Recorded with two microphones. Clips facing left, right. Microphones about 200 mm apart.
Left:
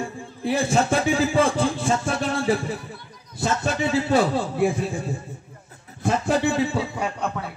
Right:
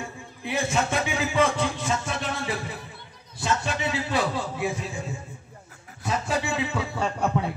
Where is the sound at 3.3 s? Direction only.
45° left (ahead or behind).